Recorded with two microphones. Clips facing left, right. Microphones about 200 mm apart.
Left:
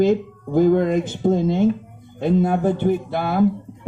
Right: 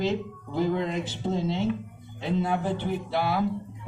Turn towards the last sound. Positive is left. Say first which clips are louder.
# left 7 dB
turn(degrees=50)  # may be behind; listen again after turning